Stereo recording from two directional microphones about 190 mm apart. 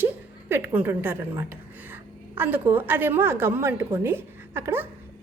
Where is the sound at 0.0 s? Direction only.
10° right (ahead or behind).